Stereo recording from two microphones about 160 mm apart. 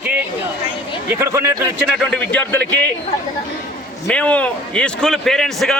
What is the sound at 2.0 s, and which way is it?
Speech, 10° left (ahead or behind).